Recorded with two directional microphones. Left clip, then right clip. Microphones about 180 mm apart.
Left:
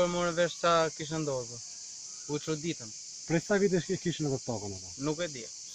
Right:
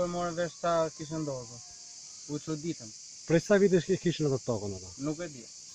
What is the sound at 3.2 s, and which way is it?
Speech, 50° right (ahead or behind).